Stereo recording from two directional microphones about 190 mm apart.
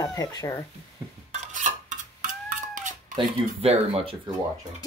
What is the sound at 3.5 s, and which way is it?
Speech, 30° right (ahead or behind).